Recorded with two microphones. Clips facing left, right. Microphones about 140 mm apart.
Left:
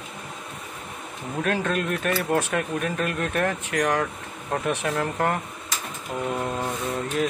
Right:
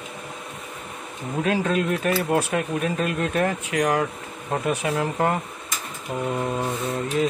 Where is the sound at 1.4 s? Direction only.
5° right (ahead or behind).